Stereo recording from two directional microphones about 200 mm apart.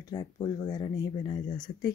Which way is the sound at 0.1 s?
20° left (ahead or behind).